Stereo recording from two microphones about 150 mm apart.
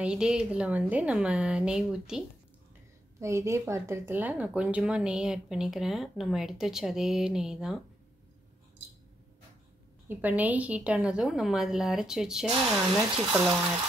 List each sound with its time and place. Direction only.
0.0 s a woman's voice: 5° right (ahead or behind)
3.2 s speech: 20° right (ahead or behind); by 7.8 s 5° right (ahead or behind)
10.0 s speech: 10° right (ahead or behind)
13.0 s speech: 25° right (ahead or behind)
13.3 s a woman's voice: 10° right (ahead or behind)